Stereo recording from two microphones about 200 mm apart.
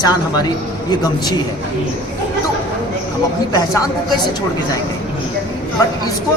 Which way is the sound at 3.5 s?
20° left (ahead or behind).